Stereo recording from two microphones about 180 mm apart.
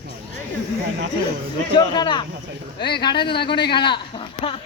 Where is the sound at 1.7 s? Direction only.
25° left (ahead or behind).